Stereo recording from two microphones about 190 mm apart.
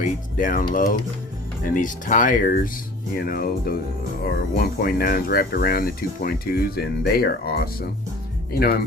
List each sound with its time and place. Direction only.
0.0 s speech: 45° left (ahead or behind)